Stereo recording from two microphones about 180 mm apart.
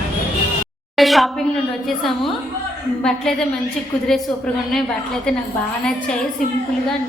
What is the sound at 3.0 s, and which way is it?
Speech, 5° left (ahead or behind).